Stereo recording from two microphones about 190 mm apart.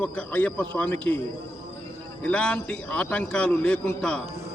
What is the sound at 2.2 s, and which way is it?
A man's voice, 5° left (ahead or behind).